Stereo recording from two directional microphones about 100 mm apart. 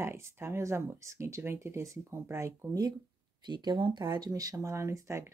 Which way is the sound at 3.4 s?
50° right (ahead or behind).